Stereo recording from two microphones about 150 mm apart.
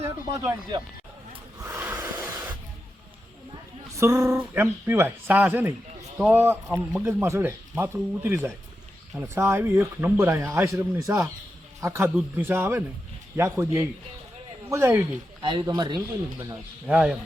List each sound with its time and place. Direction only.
0.3 s speech: 20° right (ahead or behind)
1.6 s snort: 15° right (ahead or behind)
3.9 s speech: 20° right (ahead or behind)
15.4 s speech: 30° right (ahead or behind)
16.0 s speech: 20° right (ahead or behind)
16.8 s speech: 5° right (ahead or behind)